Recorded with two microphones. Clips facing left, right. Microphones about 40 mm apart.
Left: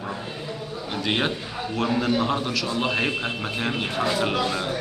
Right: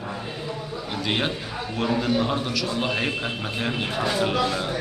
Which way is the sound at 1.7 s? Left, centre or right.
Centre.